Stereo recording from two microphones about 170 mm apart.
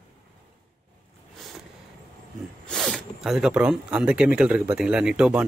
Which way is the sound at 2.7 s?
5° left (ahead or behind).